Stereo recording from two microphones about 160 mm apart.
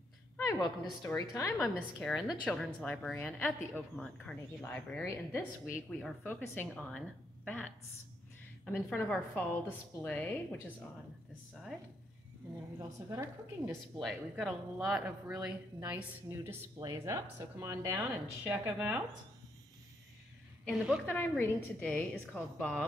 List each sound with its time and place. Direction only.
0.5 s a woman's voice: 20° left (ahead or behind)
1.6 s speech: centre (ahead or behind)
5.0 s a woman's voice: 15° left (ahead or behind)
5.9 s speech: centre (ahead or behind)
6.2 s a woman's voice: 15° left (ahead or behind)
6.7 s a woman's voice: centre (ahead or behind)
9.1 s a woman's voice: 10° left (ahead or behind)
12.7 s a woman's voice: 20° right (ahead or behind)
13.9 s speech: centre (ahead or behind)
20.6 s speech: centre (ahead or behind)
21.1 s a woman's voice: 15° left (ahead or behind)